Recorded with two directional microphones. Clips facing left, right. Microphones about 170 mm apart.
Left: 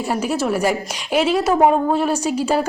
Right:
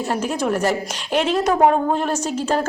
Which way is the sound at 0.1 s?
10° left (ahead or behind).